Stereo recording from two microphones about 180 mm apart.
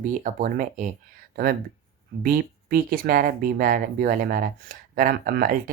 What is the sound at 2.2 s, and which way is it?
Speech, 55° right (ahead or behind).